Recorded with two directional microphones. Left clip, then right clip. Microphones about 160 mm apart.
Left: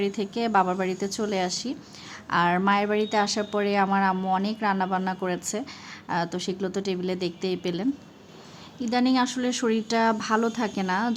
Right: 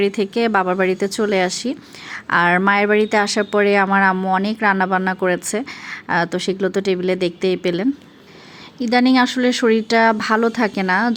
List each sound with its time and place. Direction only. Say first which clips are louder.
0.0 s a woman's voice: right 9 dB; 20° right (ahead or behind)